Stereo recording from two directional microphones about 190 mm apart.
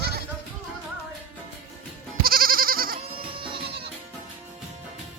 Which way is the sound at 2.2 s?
50° right (ahead or behind).